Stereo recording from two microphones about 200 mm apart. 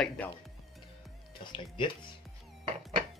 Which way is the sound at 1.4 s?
25° left (ahead or behind).